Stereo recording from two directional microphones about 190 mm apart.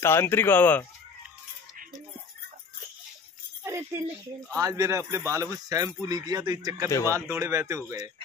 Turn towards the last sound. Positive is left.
turn(degrees=-15)  # may be behind; listen again after turning